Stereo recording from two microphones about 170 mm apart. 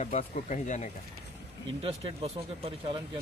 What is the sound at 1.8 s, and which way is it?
Speech, 35° right (ahead or behind).